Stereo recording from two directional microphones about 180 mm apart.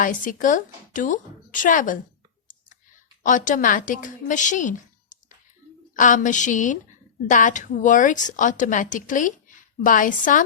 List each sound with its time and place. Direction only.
0.0 s a woman's voice: 50° left (ahead or behind)
3.2 s a woman's voice: 45° left (ahead or behind)